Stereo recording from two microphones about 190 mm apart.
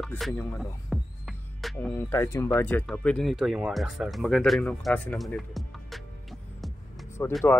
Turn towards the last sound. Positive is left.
turn(degrees=10)  # may be behind; listen again after turning